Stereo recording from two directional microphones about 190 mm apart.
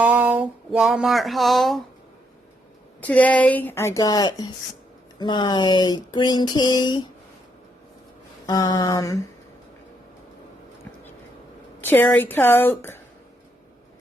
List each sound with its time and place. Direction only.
0.0 s a sound: 10° right (ahead or behind)
3.0 s a woman's voice: 5° left (ahead or behind); by 7.0 s 25° left (ahead or behind)
8.4 s speech: 20° left (ahead or behind)
11.8 s a woman's voice: 10° left (ahead or behind)